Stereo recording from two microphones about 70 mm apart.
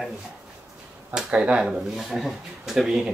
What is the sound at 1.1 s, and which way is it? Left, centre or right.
Speech, centre.